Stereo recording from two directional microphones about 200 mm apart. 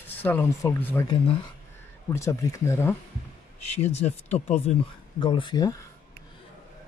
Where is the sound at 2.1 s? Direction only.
15° left (ahead or behind).